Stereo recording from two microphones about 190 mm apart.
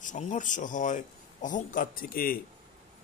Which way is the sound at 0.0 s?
40° left (ahead or behind).